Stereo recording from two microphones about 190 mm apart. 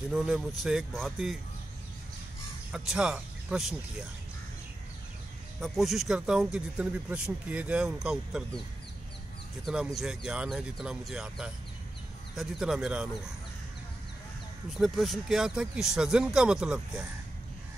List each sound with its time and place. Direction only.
0.1 s speech: 5° right (ahead or behind)
2.7 s speech: 5° right (ahead or behind)
5.6 s speech: centre (ahead or behind)
9.9 s speech: 5° right (ahead or behind)
14.7 s speech: centre (ahead or behind)